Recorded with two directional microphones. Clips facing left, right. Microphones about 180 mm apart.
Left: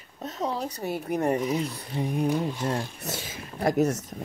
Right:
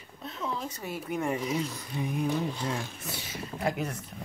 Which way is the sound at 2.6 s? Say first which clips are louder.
Left 5 dB; 45° left (ahead or behind).